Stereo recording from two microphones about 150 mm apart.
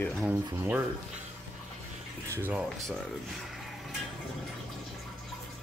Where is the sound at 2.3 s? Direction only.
15° right (ahead or behind).